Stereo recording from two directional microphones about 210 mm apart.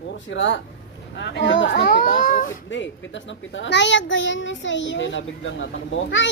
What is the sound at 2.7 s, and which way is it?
A child's voice, 60° left (ahead or behind).